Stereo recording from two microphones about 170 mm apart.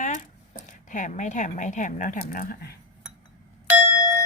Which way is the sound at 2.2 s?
60° left (ahead or behind).